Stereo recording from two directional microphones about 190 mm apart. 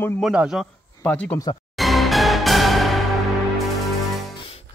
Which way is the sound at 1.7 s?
Centre (ahead or behind).